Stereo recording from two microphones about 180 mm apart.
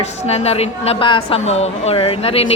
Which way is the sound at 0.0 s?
35° left (ahead or behind).